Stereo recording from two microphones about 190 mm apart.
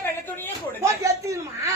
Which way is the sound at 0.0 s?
10° left (ahead or behind).